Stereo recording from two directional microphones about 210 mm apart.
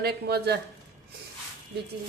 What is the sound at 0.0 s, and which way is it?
Speech, 50° right (ahead or behind).